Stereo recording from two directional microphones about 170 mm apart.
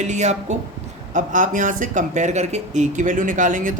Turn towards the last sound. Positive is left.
turn(degrees=-50)  # may be behind; listen again after turning